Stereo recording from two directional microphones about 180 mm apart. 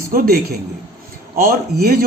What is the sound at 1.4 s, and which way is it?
Speech, 55° right (ahead or behind).